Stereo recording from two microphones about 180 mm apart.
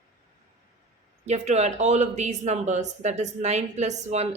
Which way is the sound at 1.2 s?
40° right (ahead or behind).